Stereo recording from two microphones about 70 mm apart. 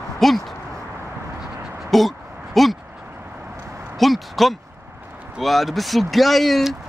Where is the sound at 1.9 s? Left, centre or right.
Centre.